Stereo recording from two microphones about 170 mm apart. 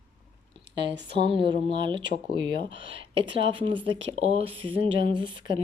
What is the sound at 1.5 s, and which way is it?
A woman's voice, 30° right (ahead or behind).